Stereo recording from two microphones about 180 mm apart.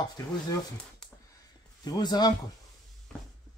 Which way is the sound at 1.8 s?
20° left (ahead or behind).